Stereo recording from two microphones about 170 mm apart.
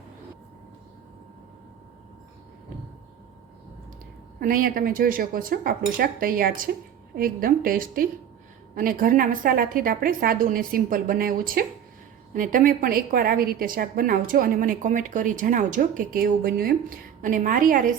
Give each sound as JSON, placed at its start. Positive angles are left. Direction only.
{"t": 4.4, "sound": "a woman's voice", "side_deg": -55}